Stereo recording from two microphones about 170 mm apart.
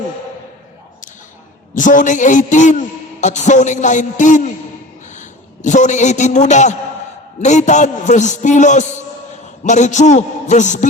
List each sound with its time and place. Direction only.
1.7 s a man's voice: 50° left (ahead or behind)